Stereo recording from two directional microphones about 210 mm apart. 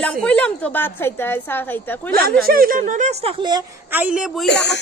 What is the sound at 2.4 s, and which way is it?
Speech, 45° right (ahead or behind).